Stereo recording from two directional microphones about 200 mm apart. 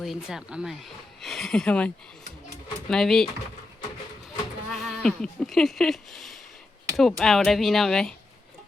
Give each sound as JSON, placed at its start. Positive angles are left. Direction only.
{"t": 0.0, "sound": "speech", "side_deg": 0}
{"t": 2.9, "sound": "speech", "side_deg": 0}
{"t": 4.7, "sound": "speech", "side_deg": 0}